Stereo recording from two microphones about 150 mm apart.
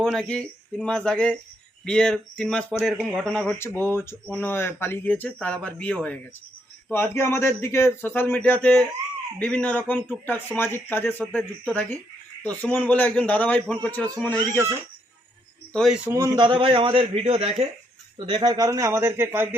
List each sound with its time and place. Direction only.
0.0 s speech: 5° left (ahead or behind)
3.8 s a man's voice: 15° left (ahead or behind)
14.3 s speech: 20° right (ahead or behind)
15.7 s speech: centre (ahead or behind)
16.0 s speech: 20° right (ahead or behind)
16.4 s a man's voice: 35° right (ahead or behind)
18.3 s a man's voice: 30° right (ahead or behind); by 19.5 s 15° right (ahead or behind)